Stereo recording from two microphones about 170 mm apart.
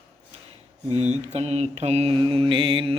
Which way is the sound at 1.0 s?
40° right (ahead or behind).